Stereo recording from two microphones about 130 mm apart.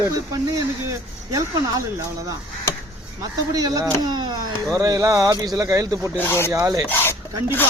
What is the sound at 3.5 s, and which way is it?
Speech, 25° right (ahead or behind).